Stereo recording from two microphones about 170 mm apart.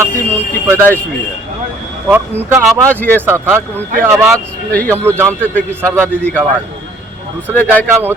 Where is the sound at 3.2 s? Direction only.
15° right (ahead or behind).